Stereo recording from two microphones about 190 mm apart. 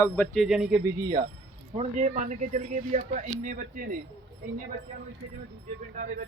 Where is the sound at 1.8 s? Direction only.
40° right (ahead or behind).